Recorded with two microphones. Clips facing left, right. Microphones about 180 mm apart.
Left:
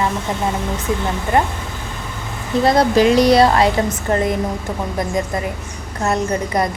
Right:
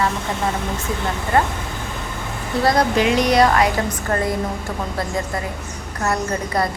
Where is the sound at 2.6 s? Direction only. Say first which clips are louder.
Left 4 dB; 30° left (ahead or behind).